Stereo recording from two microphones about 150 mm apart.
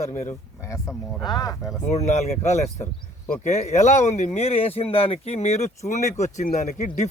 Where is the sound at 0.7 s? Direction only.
25° left (ahead or behind).